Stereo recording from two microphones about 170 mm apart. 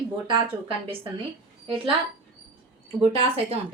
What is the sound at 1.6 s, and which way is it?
Speech, 30° right (ahead or behind).